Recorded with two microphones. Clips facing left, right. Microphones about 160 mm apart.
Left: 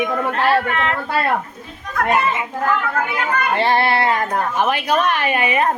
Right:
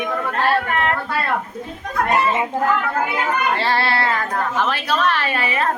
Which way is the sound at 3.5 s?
20° left (ahead or behind).